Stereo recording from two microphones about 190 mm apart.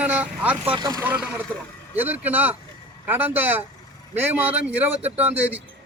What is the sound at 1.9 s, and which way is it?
Speech, 10° right (ahead or behind).